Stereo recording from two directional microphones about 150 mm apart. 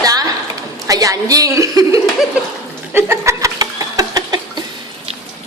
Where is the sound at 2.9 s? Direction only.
15° right (ahead or behind).